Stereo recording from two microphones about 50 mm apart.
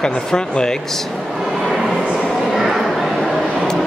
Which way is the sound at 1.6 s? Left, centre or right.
Centre.